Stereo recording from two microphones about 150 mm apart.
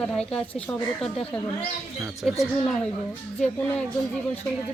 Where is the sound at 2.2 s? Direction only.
Centre (ahead or behind).